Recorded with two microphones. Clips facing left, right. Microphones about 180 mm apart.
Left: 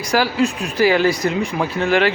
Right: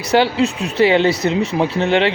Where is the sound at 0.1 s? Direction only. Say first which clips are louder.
Right 3 dB; 25° right (ahead or behind).